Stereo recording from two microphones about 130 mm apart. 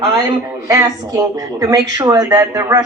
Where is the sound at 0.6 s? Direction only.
25° right (ahead or behind).